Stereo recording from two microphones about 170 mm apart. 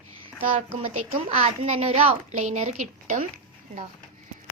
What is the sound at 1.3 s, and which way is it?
A woman's voice, 40° right (ahead or behind).